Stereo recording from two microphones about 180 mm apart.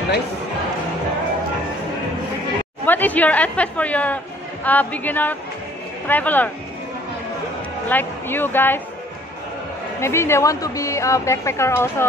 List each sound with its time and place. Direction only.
2.8 s a woman's voice: 10° left (ahead or behind)
7.9 s a woman's voice: 10° left (ahead or behind)
9.9 s a woman's voice: 15° left (ahead or behind)